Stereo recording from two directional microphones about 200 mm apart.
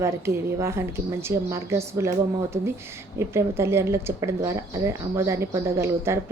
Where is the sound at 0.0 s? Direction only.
15° right (ahead or behind).